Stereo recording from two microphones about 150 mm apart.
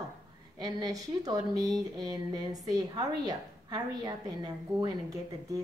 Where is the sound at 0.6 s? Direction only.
25° right (ahead or behind).